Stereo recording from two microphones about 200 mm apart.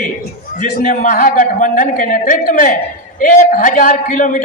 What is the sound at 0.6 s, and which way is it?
A man's voice, 40° left (ahead or behind).